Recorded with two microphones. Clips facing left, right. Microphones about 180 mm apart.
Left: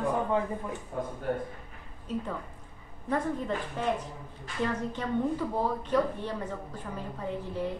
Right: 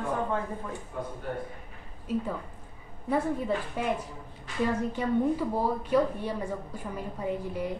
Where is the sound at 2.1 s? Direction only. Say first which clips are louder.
Right 3 dB; 10° right (ahead or behind).